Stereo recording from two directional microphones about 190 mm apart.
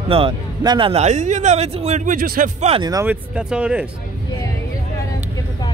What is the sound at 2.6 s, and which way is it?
Speech, 30° right (ahead or behind).